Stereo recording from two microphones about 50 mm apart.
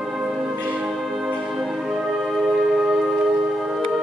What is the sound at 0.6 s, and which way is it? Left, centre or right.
Music, right.